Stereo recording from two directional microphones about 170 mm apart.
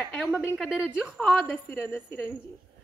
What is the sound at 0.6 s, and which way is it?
Speech, 5° right (ahead or behind).